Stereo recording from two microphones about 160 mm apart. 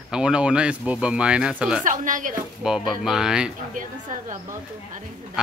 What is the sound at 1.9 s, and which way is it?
Speech, 55° right (ahead or behind).